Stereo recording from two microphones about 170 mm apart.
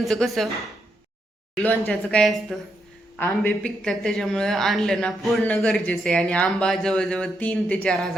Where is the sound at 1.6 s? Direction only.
10° left (ahead or behind).